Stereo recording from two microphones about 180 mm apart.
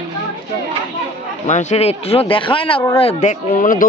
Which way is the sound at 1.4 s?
40° left (ahead or behind).